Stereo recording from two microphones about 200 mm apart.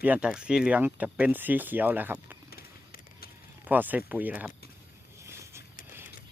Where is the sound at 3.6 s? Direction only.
10° right (ahead or behind).